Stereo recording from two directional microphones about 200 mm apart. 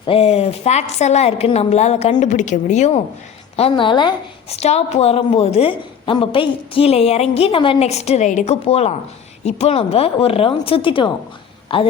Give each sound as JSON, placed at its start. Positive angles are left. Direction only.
{"t": 0.0, "sound": "a woman's voice", "side_deg": 30}